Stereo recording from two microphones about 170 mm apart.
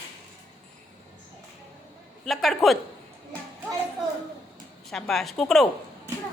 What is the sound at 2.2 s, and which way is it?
Speech, centre (ahead or behind).